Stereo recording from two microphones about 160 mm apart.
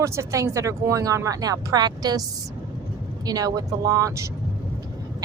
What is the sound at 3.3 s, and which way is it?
Speech, 25° right (ahead or behind).